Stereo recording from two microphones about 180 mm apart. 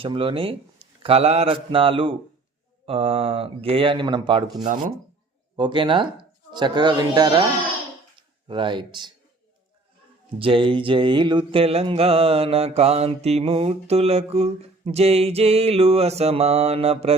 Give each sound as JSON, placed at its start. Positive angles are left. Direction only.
{"t": 0.0, "sound": "speech", "side_deg": -30}
{"t": 1.0, "sound": "mantra", "side_deg": -35}
{"t": 5.5, "sound": "speech", "side_deg": -25}
{"t": 8.4, "sound": "speech", "side_deg": -25}
{"t": 10.3, "sound": "mantra", "side_deg": -30}